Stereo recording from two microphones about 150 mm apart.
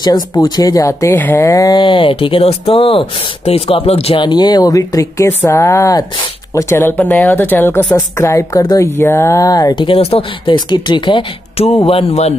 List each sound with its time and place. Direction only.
0.0 s speech: 30° left (ahead or behind)
9.8 s speech: 35° left (ahead or behind)